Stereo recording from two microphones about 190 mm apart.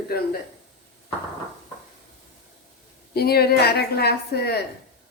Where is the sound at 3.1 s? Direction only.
55° left (ahead or behind).